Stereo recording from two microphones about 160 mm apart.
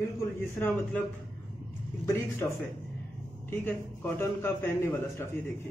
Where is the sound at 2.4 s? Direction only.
20° left (ahead or behind).